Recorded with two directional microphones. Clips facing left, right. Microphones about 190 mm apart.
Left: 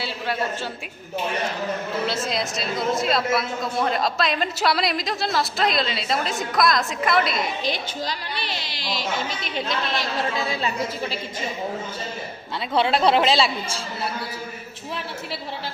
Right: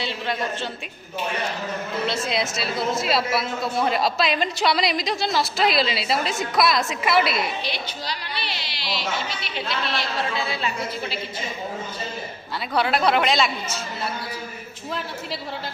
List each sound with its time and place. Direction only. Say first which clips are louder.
0.0 s a woman's voice: even; 5° left (ahead or behind)
2.0 s a woman's voice: right 1 dB; centre (ahead or behind)
7.6 s a woman's voice: left 3 dB; 45° left (ahead or behind)
12.7 s speech: left 2 dB; 25° left (ahead or behind)